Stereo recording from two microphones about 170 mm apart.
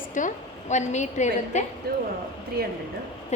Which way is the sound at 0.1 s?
50° left (ahead or behind).